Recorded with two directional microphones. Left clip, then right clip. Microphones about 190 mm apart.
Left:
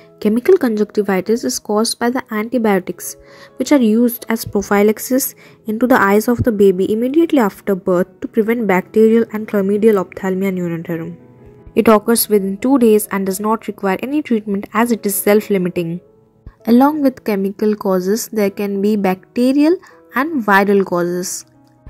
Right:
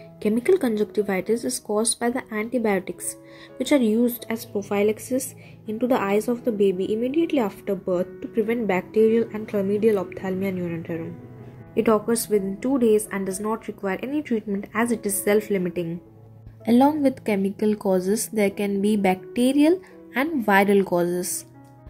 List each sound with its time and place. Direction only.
0.2 s speech: 35° left (ahead or behind)
16.6 s a woman's voice: 25° left (ahead or behind)